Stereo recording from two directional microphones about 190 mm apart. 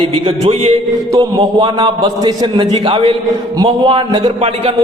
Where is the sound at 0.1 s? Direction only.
30° right (ahead or behind).